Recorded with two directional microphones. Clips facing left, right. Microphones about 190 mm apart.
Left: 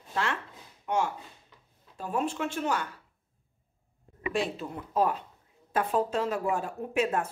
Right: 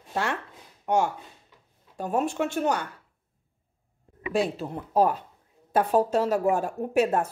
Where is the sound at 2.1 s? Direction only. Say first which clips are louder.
Right 4 dB; 45° right (ahead or behind).